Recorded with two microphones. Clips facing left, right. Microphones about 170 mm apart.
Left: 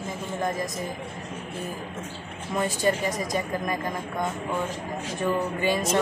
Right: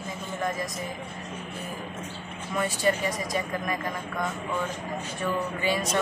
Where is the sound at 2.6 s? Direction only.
25° left (ahead or behind).